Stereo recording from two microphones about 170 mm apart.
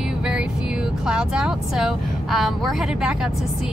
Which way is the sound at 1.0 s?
5° right (ahead or behind).